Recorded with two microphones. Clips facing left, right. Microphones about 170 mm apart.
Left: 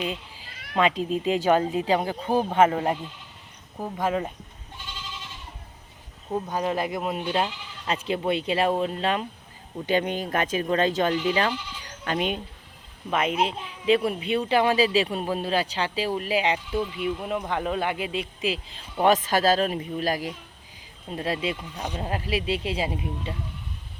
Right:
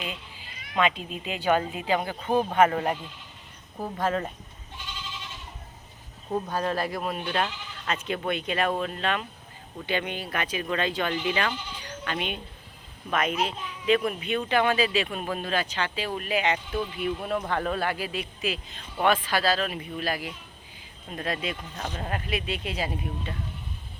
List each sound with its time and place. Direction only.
0.0 s cat: 30° left (ahead or behind)
0.8 s speech: 35° left (ahead or behind)
3.8 s speech: 10° left (ahead or behind)
6.3 s speech: 15° left (ahead or behind); by 12.4 s 40° left (ahead or behind)
13.1 s speech: 25° left (ahead or behind)
21.5 s speech: 15° left (ahead or behind)
22.0 s speech: 30° left (ahead or behind)